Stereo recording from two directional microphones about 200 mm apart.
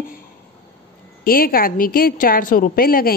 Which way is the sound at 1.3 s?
50° left (ahead or behind).